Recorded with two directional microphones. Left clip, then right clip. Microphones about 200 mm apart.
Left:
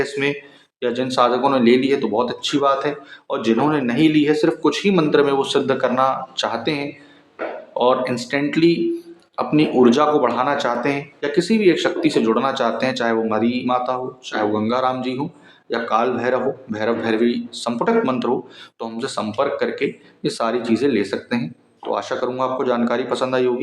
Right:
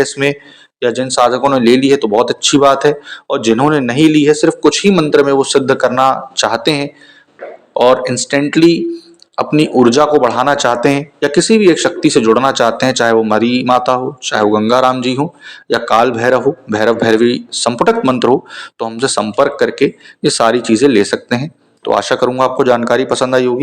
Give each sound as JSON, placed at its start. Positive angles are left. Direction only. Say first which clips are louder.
{"t": 0.0, "sound": "a man's voice", "louder": "right 7 dB", "side_deg": -35}